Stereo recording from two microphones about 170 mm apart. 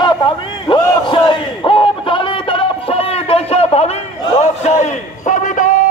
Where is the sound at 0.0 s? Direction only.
25° left (ahead or behind).